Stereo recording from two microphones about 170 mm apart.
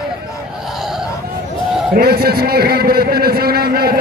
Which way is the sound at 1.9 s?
70° right (ahead or behind).